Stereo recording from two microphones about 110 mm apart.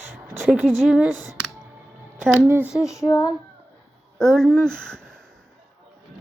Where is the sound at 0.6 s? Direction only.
5° left (ahead or behind).